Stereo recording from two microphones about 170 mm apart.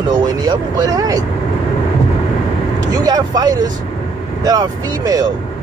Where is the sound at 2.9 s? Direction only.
25° right (ahead or behind).